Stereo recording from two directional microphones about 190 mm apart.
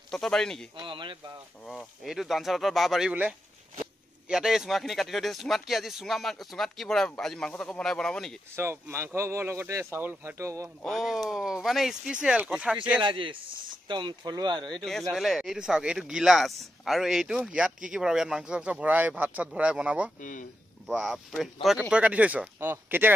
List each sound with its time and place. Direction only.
0.1 s speech: 5° left (ahead or behind)
0.7 s speech: 25° right (ahead or behind)
1.7 s speech: centre (ahead or behind)
8.5 s speech: 15° right (ahead or behind)
10.8 s speech: centre (ahead or behind)
13.0 s speech: 25° right (ahead or behind)
14.9 s speech: centre (ahead or behind)
20.2 s speech: 45° left (ahead or behind)
20.8 s speech: centre (ahead or behind)